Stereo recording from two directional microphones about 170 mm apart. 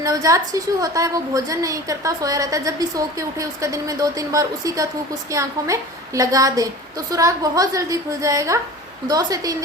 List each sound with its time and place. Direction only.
0.0 s a woman's voice: 20° right (ahead or behind)